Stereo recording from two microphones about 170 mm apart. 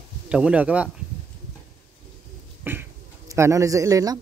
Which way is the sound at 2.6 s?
10° right (ahead or behind).